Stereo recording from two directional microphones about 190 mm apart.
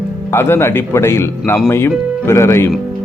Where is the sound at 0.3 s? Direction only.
10° left (ahead or behind).